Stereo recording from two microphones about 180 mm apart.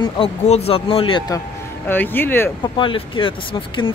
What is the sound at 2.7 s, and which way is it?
Speech, 30° left (ahead or behind).